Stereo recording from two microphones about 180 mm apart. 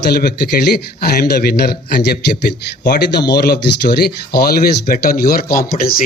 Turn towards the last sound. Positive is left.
turn(degrees=55)  # may be behind; listen again after turning